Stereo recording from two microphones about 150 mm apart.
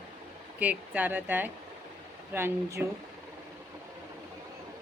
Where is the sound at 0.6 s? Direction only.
10° right (ahead or behind).